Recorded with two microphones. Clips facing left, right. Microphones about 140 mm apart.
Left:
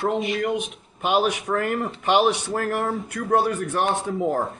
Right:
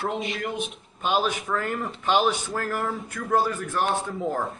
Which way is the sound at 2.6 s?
65° left (ahead or behind).